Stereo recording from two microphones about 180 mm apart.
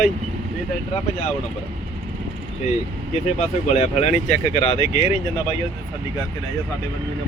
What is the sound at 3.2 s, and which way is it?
Speech, 40° left (ahead or behind).